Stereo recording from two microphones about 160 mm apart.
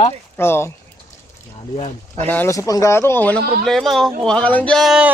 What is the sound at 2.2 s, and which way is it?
Speech, 15° left (ahead or behind).